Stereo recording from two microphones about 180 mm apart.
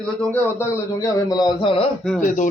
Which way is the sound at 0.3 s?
15° left (ahead or behind).